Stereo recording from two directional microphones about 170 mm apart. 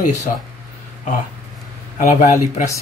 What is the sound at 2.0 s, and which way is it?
Speech, 45° left (ahead or behind).